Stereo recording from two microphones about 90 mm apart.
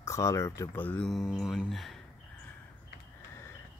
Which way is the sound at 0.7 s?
15° left (ahead or behind).